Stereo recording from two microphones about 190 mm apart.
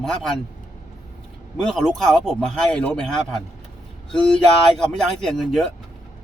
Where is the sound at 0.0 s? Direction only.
Centre (ahead or behind).